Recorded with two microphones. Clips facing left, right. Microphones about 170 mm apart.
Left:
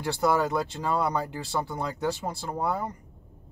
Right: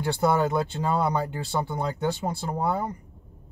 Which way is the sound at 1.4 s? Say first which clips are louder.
Right 2 dB; 30° right (ahead or behind).